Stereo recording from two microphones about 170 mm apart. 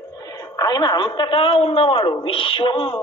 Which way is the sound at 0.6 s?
25° left (ahead or behind).